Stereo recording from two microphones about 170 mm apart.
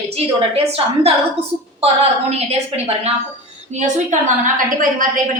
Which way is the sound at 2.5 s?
35° right (ahead or behind).